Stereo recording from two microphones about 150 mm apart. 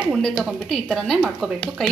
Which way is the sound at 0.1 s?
Centre (ahead or behind).